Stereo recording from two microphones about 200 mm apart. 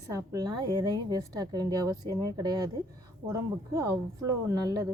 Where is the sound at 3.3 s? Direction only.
15° right (ahead or behind).